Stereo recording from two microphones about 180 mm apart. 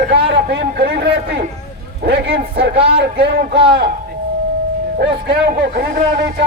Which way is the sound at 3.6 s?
30° right (ahead or behind).